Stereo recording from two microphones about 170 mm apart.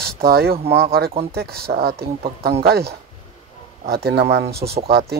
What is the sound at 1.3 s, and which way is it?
Speech, 65° right (ahead or behind).